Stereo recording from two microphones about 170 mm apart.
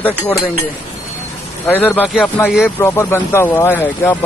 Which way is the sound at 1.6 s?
10° left (ahead or behind).